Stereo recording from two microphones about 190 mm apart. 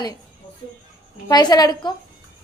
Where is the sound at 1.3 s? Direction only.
20° left (ahead or behind).